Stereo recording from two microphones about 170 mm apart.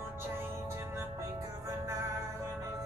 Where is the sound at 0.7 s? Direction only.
15° right (ahead or behind).